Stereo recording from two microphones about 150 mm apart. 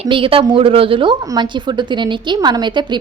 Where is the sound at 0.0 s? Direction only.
35° right (ahead or behind).